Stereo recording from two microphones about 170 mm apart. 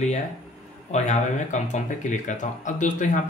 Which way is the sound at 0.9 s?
45° left (ahead or behind).